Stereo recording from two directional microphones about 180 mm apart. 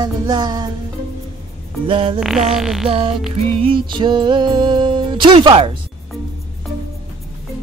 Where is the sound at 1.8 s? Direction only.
30° right (ahead or behind).